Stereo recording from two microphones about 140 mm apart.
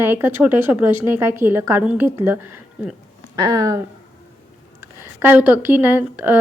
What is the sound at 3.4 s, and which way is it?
Speech, 25° right (ahead or behind).